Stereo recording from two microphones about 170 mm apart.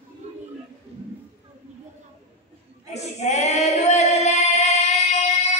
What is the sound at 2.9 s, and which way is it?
Female singing, 40° left (ahead or behind).